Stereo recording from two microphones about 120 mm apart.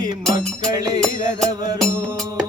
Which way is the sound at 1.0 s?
5° left (ahead or behind).